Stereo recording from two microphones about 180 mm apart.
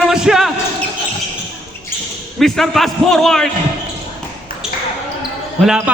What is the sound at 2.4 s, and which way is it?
A man's voice, centre (ahead or behind).